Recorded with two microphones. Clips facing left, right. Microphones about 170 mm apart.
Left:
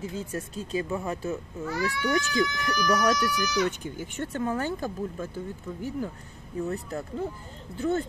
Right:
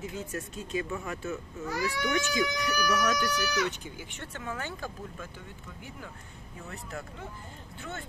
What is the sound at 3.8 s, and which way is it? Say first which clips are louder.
Speech: left 9 dB; 45° left (ahead or behind).